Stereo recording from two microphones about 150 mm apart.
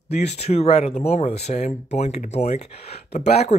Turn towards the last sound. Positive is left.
turn(degrees=45)  # may be behind; listen again after turning